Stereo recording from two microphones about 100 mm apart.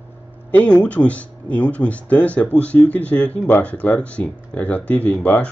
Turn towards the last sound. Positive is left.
turn(degrees=15)  # may be behind; listen again after turning